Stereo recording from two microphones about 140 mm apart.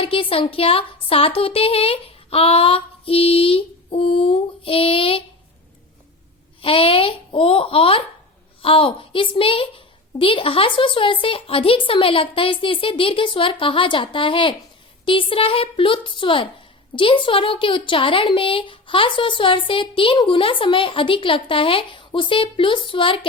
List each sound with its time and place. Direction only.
0.0 s speech: 40° left (ahead or behind)
6.6 s a woman's voice: 40° left (ahead or behind)